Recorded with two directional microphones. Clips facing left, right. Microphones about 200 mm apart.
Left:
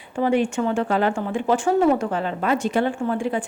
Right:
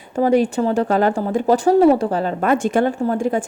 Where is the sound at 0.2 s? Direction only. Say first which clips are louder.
Right 4 dB; 40° right (ahead or behind).